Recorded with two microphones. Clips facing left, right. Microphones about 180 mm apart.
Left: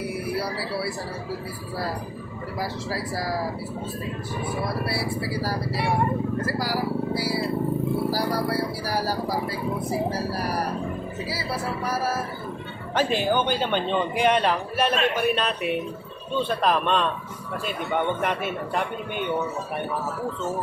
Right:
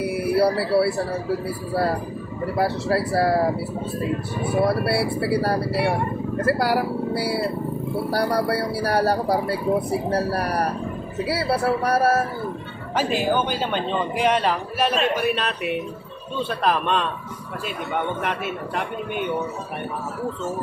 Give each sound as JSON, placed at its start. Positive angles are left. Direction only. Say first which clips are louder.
{"t": 0.0, "sound": "a sound", "louder": "right 8 dB", "side_deg": -65}
{"t": 0.6, "sound": "speech", "louder": "right 9 dB", "side_deg": -60}
{"t": 2.5, "sound": "speech", "louder": "right 8 dB", "side_deg": -65}
{"t": 4.6, "sound": "speech", "louder": "right 10 dB", "side_deg": -65}
{"t": 12.9, "sound": "a man's voice", "louder": "right 1 dB", "side_deg": -5}